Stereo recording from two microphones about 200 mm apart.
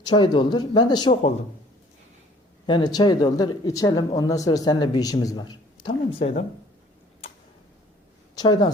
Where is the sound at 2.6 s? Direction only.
20° left (ahead or behind).